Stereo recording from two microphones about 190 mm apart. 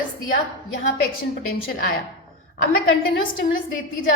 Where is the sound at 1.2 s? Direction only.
50° left (ahead or behind).